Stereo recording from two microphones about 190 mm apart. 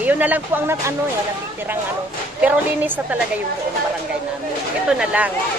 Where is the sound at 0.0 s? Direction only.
10° right (ahead or behind).